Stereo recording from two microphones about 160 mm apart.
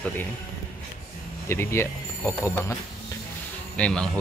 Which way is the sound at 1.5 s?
15° left (ahead or behind).